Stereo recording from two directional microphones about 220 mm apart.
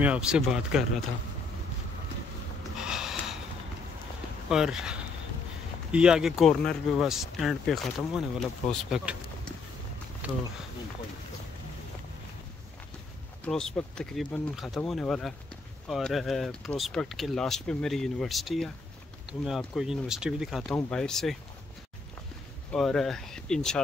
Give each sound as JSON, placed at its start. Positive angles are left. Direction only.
{"t": 0.0, "sound": "speech", "side_deg": -5}
{"t": 2.8, "sound": "snort", "side_deg": 0}
{"t": 4.5, "sound": "speech", "side_deg": -5}
{"t": 13.5, "sound": "speech", "side_deg": 0}
{"t": 22.7, "sound": "speech", "side_deg": 0}